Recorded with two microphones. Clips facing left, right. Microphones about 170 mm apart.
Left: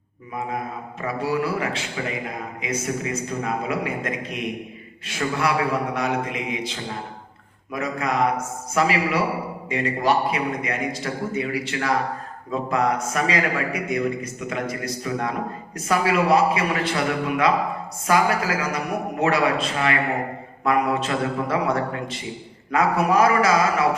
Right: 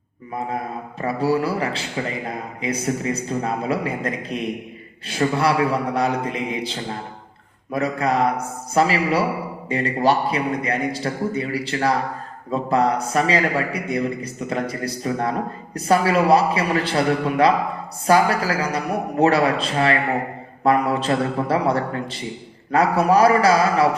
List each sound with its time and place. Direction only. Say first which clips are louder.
0.9 s a man's voice: right 4 dB; 35° right (ahead or behind)